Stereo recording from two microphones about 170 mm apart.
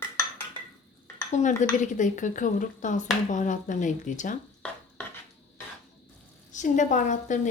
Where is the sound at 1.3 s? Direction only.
45° left (ahead or behind).